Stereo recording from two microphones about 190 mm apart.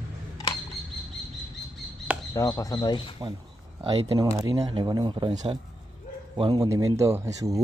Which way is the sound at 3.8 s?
25° right (ahead or behind).